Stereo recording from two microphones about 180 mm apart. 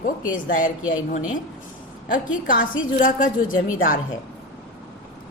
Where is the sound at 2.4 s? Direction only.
50° left (ahead or behind).